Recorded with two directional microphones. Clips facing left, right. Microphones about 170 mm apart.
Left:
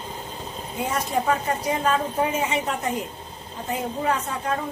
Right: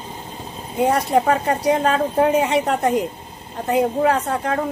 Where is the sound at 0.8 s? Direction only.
65° right (ahead or behind).